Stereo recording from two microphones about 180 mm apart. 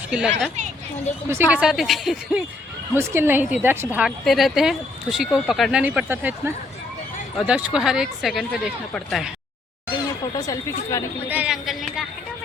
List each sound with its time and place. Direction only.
0.1 s speech: 5° right (ahead or behind)
1.3 s speech: 10° right (ahead or behind)
2.9 s a woman's voice: 15° right (ahead or behind); by 9.3 s centre (ahead or behind)
9.9 s speech: 20° left (ahead or behind)
11.3 s a sound: 5° right (ahead or behind)